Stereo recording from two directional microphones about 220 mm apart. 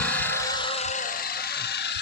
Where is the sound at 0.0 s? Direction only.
5° left (ahead or behind).